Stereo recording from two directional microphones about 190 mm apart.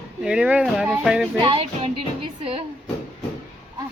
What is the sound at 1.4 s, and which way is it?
Music, 25° right (ahead or behind).